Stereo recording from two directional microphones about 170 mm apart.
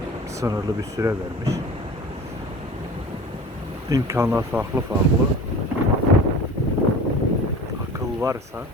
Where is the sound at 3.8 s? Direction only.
20° right (ahead or behind).